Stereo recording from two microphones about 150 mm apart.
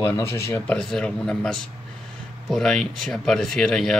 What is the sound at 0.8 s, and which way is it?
Speech, 5° left (ahead or behind).